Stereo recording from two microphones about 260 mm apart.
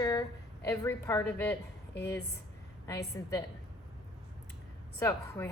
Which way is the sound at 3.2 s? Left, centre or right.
Centre.